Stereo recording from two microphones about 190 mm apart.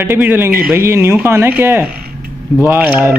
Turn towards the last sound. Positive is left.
turn(degrees=-10)  # may be behind; listen again after turning